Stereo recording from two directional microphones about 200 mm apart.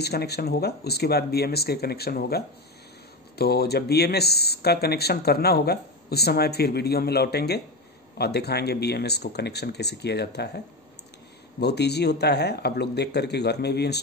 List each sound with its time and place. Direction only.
0.0 s speech: 55° left (ahead or behind)
11.6 s speech: 55° left (ahead or behind)